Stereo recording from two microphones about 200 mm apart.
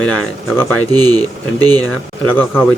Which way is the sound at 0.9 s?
20° right (ahead or behind).